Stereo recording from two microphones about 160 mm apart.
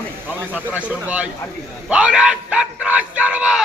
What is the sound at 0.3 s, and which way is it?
Speech, 10° right (ahead or behind).